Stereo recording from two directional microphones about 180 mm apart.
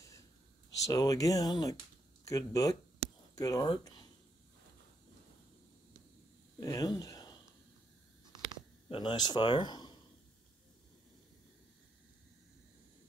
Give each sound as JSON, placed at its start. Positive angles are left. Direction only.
{"t": 0.8, "sound": "speech", "side_deg": 20}
{"t": 6.6, "sound": "speech", "side_deg": 20}
{"t": 8.8, "sound": "a man's voice", "side_deg": 25}